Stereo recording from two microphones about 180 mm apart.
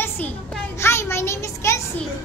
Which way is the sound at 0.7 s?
15° left (ahead or behind).